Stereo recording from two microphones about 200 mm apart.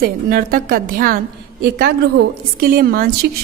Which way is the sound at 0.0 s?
45° right (ahead or behind).